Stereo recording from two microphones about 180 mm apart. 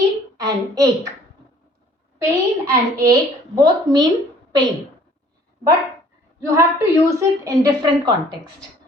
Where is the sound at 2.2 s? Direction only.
15° right (ahead or behind).